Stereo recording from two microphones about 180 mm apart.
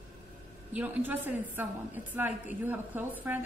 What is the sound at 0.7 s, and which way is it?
A woman's voice, 10° right (ahead or behind).